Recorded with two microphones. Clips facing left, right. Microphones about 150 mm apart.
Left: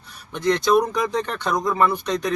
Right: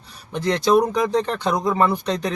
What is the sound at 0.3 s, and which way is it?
Speech, 35° right (ahead or behind).